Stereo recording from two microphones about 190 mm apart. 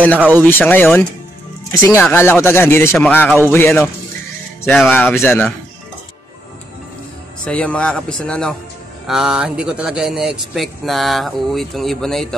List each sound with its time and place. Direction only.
0.4 s speech: 10° left (ahead or behind)
7.4 s speech: 5° left (ahead or behind)